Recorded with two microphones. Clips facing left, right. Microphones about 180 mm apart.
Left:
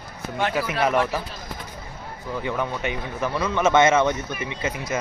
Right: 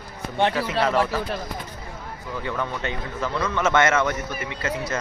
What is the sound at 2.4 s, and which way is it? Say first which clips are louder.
A man's voice: left 2 dB; 15° left (ahead or behind).